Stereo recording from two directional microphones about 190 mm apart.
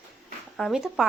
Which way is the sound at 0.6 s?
Centre (ahead or behind).